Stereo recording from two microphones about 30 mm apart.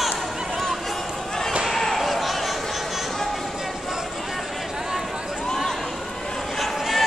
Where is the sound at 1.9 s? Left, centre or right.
Centre.